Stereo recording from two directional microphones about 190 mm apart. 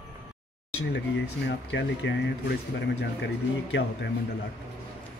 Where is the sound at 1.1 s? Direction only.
65° left (ahead or behind).